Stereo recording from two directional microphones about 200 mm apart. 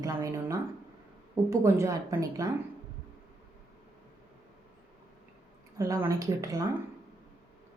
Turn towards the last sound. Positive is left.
turn(degrees=-15)  # may be behind; listen again after turning